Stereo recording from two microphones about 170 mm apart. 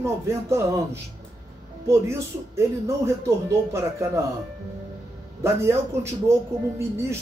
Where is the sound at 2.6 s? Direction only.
15° right (ahead or behind).